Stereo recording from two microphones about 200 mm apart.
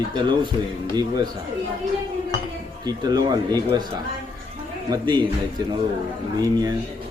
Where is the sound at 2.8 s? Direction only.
20° right (ahead or behind).